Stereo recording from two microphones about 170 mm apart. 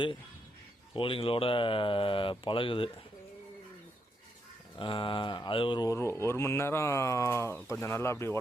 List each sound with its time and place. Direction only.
0.9 s speech: 30° left (ahead or behind)
4.8 s speech: 30° left (ahead or behind)